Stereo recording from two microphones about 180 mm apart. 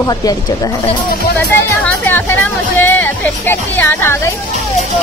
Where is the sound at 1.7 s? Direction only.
10° left (ahead or behind).